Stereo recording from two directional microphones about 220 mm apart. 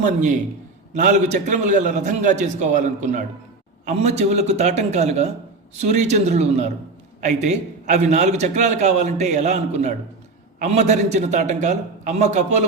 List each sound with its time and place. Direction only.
0.0 s a man's voice: 35° right (ahead or behind)